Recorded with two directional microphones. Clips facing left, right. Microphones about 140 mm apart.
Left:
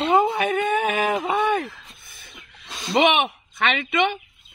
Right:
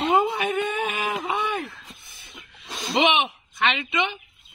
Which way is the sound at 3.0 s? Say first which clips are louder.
Left 3 dB; 50° left (ahead or behind).